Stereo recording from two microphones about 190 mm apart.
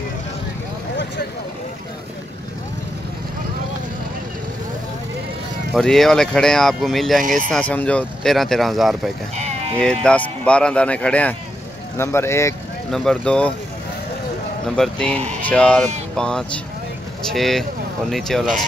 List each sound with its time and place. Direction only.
5.7 s speech: centre (ahead or behind)
12.9 s speech: 5° left (ahead or behind)
14.8 s speech: 5° left (ahead or behind)